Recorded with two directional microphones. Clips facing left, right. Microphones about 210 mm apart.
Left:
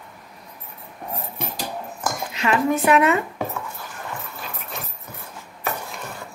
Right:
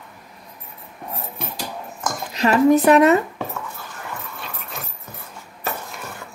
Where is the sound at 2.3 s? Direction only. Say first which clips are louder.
Right 7 dB; 40° right (ahead or behind).